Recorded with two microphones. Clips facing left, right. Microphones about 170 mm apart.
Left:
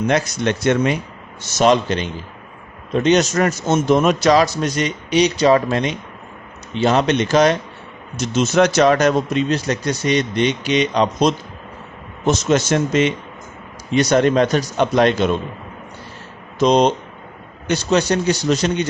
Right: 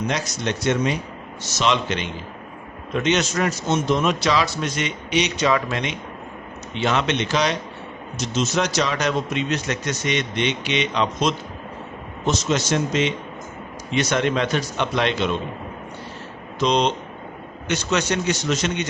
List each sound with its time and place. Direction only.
0.1 s a man's voice: 55° left (ahead or behind)
8.2 s speech: 55° left (ahead or behind); by 11.3 s 40° left (ahead or behind)
12.2 s a man's voice: 50° left (ahead or behind)
13.9 s speech: 40° left (ahead or behind)
16.6 s a man's voice: 45° left (ahead or behind)